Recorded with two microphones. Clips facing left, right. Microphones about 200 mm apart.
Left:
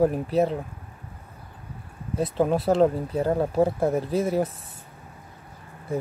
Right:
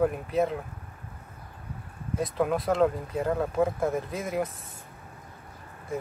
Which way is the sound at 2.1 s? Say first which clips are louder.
Left 4 dB; 30° left (ahead or behind).